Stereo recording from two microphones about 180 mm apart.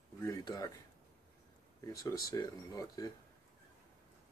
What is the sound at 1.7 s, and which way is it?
Speech, 15° left (ahead or behind).